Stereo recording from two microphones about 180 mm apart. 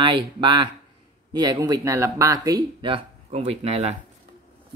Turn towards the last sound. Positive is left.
turn(degrees=-35)  # may be behind; listen again after turning